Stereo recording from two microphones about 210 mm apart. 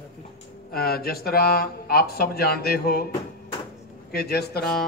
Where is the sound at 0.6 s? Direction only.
45° left (ahead or behind).